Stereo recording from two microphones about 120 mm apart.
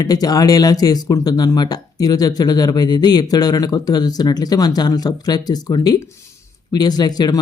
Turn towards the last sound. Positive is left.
turn(degrees=35)  # may be behind; listen again after turning